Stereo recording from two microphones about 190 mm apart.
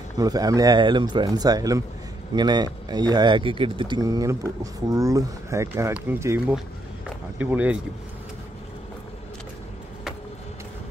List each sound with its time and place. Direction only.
0.2 s speech: 20° right (ahead or behind)